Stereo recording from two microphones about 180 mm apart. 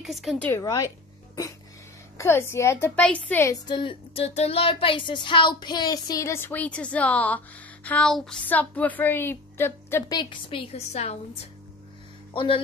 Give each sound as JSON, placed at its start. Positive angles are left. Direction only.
{"t": 0.0, "sound": "a woman's voice", "side_deg": 0}
{"t": 0.5, "sound": "speech", "side_deg": 15}
{"t": 2.1, "sound": "a sound", "side_deg": 15}
{"t": 3.6, "sound": "a sound", "side_deg": 25}
{"t": 10.1, "sound": "a woman's voice", "side_deg": 30}
{"t": 12.4, "sound": "speech", "side_deg": 30}